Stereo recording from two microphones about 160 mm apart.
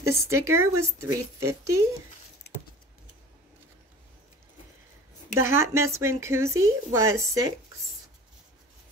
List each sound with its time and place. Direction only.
0.0 s speech: 15° right (ahead or behind)
2.4 s a sound: 85° left
5.4 s speech: 15° right (ahead or behind)